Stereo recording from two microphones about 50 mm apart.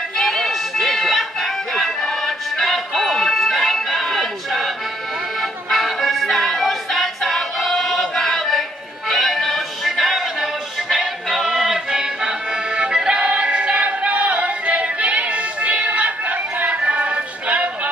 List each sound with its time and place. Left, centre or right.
0.2 s music: centre; by 17.6 s right